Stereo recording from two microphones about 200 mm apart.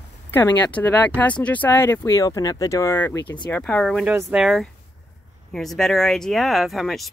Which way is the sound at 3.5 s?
5° left (ahead or behind).